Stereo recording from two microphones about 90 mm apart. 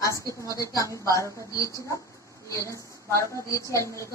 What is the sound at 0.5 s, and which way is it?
A woman's voice, 40° left (ahead or behind).